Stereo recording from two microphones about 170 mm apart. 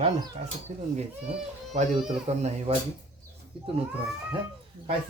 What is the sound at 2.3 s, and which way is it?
Speech, 40° right (ahead or behind).